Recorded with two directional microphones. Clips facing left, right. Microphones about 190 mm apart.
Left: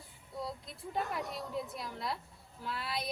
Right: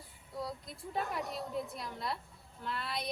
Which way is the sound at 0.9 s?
Centre (ahead or behind).